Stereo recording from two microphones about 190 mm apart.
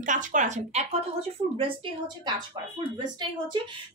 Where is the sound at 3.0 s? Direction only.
25° right (ahead or behind).